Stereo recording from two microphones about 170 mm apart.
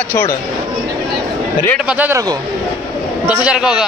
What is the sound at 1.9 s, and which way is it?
Speech, 10° right (ahead or behind).